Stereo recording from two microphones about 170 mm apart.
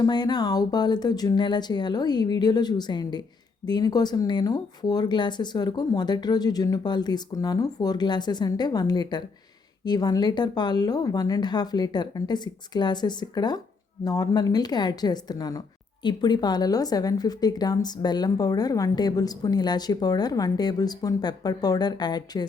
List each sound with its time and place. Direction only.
0.0 s a woman's voice: 25° left (ahead or behind)